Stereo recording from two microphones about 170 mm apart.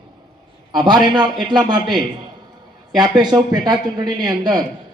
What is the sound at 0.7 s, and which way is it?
A man's voice, 25° right (ahead or behind).